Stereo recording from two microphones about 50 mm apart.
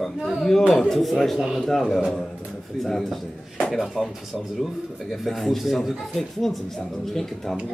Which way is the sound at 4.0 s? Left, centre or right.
Centre.